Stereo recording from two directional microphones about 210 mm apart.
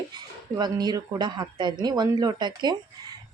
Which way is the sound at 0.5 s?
20° right (ahead or behind).